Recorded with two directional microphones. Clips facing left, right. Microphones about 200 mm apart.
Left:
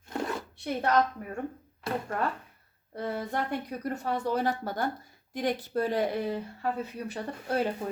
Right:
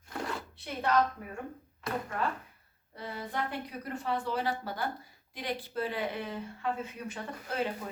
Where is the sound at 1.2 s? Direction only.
45° left (ahead or behind).